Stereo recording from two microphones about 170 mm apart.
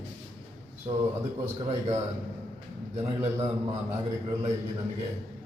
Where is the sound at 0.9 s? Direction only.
30° right (ahead or behind).